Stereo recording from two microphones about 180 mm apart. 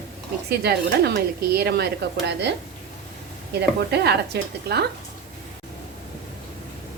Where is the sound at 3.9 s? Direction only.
65° right (ahead or behind).